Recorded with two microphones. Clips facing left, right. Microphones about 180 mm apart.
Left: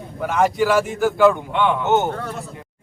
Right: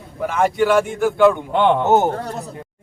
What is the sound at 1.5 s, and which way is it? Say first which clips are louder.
Speech: right 3 dB; 40° right (ahead or behind).